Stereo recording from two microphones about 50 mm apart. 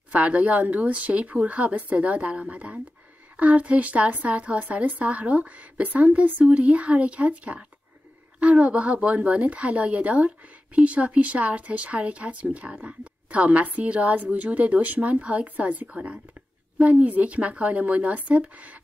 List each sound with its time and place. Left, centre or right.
0.1 s speech: right